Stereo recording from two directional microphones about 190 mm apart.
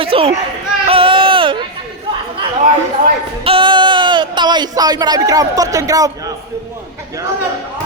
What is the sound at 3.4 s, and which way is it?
Speech, 25° right (ahead or behind).